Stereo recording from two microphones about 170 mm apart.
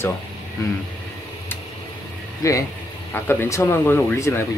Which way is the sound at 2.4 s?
20° left (ahead or behind).